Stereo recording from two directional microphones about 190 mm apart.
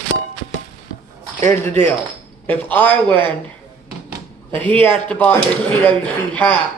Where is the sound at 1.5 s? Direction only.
10° left (ahead or behind).